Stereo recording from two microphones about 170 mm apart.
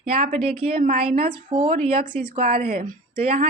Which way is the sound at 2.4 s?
60° right (ahead or behind).